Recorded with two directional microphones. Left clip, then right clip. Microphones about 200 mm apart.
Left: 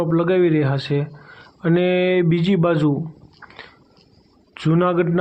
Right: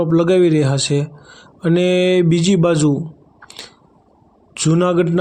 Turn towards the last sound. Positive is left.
turn(degrees=-35)  # may be behind; listen again after turning